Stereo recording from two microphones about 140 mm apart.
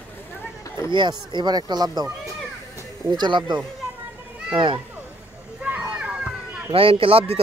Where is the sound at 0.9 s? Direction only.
30° right (ahead or behind).